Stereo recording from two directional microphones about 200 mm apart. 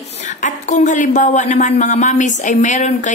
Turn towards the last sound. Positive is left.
turn(degrees=35)  # may be behind; listen again after turning